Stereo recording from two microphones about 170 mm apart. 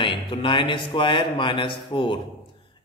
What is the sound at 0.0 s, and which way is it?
A man's voice, 30° left (ahead or behind).